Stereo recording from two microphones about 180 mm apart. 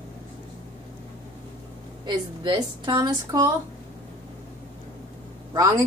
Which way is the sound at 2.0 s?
25° right (ahead or behind).